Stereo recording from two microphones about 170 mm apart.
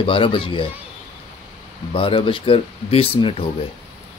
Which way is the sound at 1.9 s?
30° left (ahead or behind).